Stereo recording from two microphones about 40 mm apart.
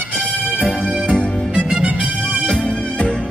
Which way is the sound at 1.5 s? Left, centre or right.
Right.